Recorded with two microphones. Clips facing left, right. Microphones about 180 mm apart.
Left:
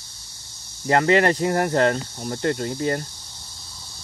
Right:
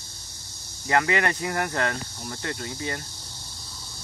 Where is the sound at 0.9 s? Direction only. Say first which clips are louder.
Left 6 dB; 35° left (ahead or behind).